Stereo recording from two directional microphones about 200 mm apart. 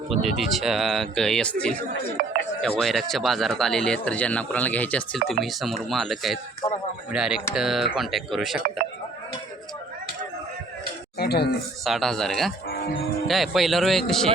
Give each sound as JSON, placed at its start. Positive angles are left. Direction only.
{"t": 0.1, "sound": "speech", "side_deg": 0}
{"t": 2.2, "sound": "speech", "side_deg": -45}
{"t": 2.6, "sound": "speech", "side_deg": 5}
{"t": 11.2, "sound": "speech", "side_deg": 55}
{"t": 11.9, "sound": "speech", "side_deg": 0}